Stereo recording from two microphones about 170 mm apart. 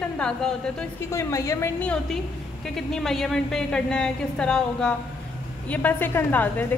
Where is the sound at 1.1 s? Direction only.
15° left (ahead or behind).